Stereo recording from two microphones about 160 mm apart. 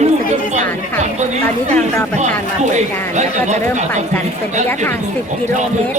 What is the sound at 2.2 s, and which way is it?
Speech, 45° right (ahead or behind).